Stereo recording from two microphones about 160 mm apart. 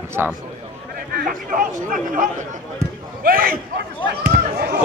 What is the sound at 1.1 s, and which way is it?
Speech, 60° right (ahead or behind).